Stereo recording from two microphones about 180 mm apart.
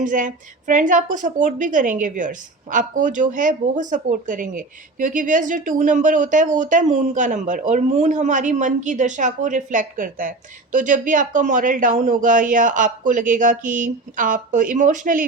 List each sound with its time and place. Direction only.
0.0 s a woman's voice: 45° right (ahead or behind)